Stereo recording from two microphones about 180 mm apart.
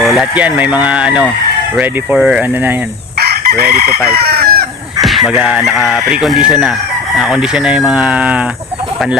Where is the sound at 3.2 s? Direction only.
60° right (ahead or behind).